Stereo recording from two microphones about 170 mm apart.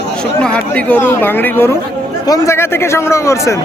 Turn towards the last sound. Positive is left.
turn(degrees=15)  # may be behind; listen again after turning